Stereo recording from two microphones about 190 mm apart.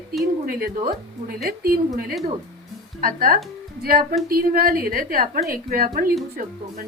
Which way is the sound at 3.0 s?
45° right (ahead or behind).